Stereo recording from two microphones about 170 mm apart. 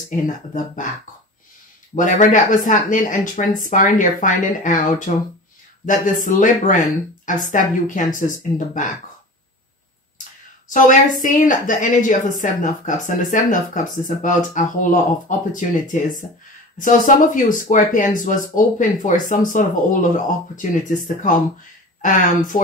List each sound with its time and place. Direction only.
2.0 s speech: 50° left (ahead or behind)
10.7 s speech: 50° left (ahead or behind)
22.0 s speech: 50° left (ahead or behind)